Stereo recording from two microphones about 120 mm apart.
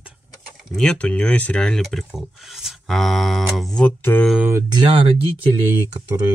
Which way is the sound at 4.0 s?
15° left (ahead or behind).